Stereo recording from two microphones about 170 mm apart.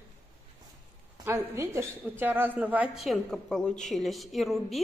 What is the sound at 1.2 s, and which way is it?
A woman's voice, 15° right (ahead or behind).